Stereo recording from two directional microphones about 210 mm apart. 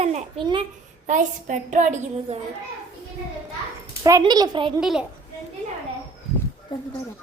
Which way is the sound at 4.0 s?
15° right (ahead or behind).